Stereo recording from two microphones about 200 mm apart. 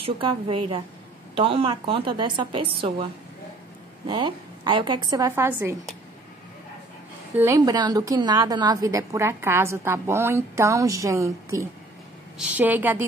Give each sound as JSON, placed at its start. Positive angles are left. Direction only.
{"t": 0.2, "sound": "a woman's voice", "side_deg": -25}
{"t": 4.1, "sound": "a woman's voice", "side_deg": -25}
{"t": 7.3, "sound": "a woman's voice", "side_deg": -15}